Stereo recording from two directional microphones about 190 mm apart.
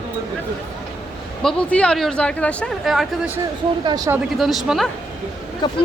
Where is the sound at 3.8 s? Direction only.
20° right (ahead or behind).